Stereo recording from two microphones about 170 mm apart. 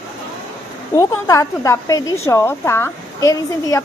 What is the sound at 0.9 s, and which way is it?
A woman's voice, 15° left (ahead or behind).